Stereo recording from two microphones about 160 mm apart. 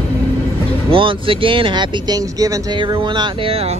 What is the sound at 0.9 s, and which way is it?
Speech, 35° right (ahead or behind).